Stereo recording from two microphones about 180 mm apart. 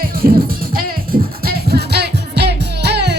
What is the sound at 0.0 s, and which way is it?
Music, 55° right (ahead or behind).